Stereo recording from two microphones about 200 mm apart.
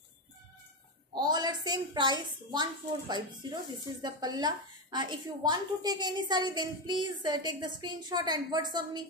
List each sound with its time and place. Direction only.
1.1 s a woman's voice: 20° right (ahead or behind)